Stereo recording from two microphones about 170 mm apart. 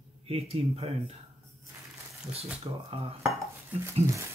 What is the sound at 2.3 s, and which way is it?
Speech, 35° right (ahead or behind).